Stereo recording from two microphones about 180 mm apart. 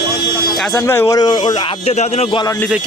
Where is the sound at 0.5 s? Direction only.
5° left (ahead or behind).